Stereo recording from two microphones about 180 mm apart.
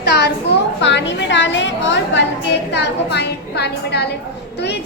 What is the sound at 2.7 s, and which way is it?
A woman's voice, 70° left (ahead or behind).